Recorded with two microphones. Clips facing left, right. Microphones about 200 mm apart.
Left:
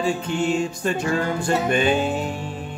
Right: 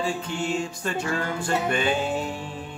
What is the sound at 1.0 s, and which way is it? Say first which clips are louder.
Music: left 5 dB; 35° left (ahead or behind).